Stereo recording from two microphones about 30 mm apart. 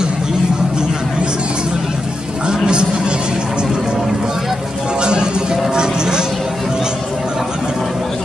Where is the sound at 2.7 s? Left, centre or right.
Right.